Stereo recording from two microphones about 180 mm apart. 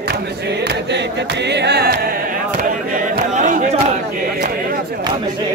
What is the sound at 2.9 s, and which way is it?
Chatter, 45° right (ahead or behind).